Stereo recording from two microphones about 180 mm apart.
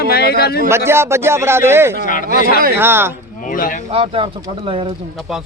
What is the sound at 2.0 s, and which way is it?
Speech, 45° left (ahead or behind).